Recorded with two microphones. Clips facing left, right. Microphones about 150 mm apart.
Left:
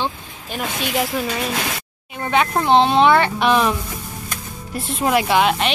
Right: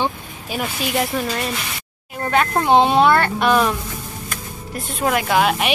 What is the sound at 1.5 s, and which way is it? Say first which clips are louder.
Speech: left 4 dB; 85° left.